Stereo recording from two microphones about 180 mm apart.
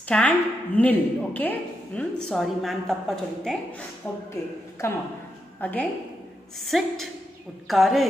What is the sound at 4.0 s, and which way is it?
A woman's voice, 15° left (ahead or behind).